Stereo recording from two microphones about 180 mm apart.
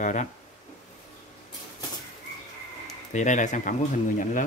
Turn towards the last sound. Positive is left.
turn(degrees=45)  # may be behind; listen again after turning